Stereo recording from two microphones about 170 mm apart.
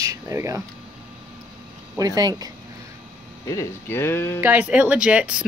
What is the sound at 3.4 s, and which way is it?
Speech, 15° left (ahead or behind).